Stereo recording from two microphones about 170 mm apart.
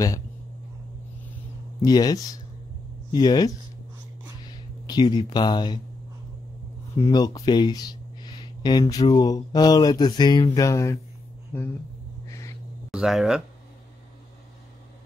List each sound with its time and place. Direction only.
1.8 s speech: 20° left (ahead or behind)
7.0 s speech: 25° left (ahead or behind)
12.3 s owl: 20° left (ahead or behind)
12.9 s speech: centre (ahead or behind)